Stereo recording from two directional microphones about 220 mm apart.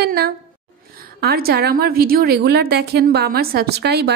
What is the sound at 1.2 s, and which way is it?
A woman's voice, 45° right (ahead or behind).